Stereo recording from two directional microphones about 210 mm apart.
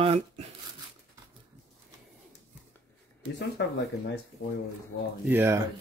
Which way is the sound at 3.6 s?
60° left (ahead or behind).